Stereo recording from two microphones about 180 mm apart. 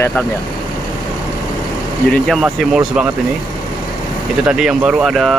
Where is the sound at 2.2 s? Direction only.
Centre (ahead or behind).